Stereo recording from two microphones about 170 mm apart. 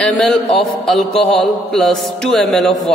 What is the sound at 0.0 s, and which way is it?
A man's voice, 5° left (ahead or behind).